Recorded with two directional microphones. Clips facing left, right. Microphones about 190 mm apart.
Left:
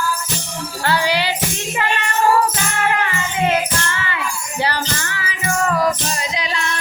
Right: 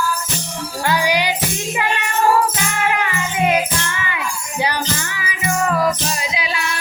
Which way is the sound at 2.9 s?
10° right (ahead or behind).